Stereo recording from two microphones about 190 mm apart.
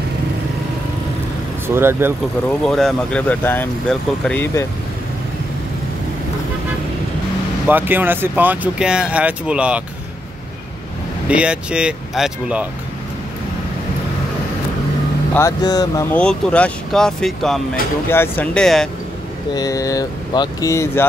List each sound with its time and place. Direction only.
1.8 s speech: 10° right (ahead or behind)
2.6 s speech: 5° left (ahead or behind)
7.6 s speech: 10° right (ahead or behind)
11.2 s speech: 5° right (ahead or behind)
15.3 s speech: 20° left (ahead or behind)
19.5 s speech: 20° left (ahead or behind)